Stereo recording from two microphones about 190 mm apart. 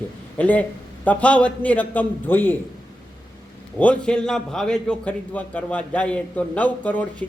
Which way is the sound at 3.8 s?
5° left (ahead or behind).